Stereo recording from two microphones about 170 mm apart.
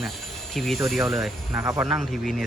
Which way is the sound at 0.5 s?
Centre (ahead or behind).